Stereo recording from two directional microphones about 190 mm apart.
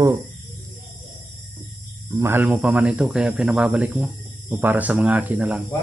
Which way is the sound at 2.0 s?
15° right (ahead or behind).